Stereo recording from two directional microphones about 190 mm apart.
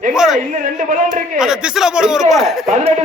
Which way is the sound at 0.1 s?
5° right (ahead or behind).